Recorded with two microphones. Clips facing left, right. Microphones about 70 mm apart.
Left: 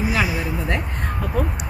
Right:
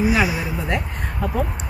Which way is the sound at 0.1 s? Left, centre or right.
Centre.